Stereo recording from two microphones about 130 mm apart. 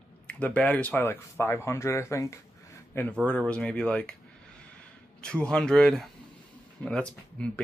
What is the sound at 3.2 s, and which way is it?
Speech, 10° left (ahead or behind).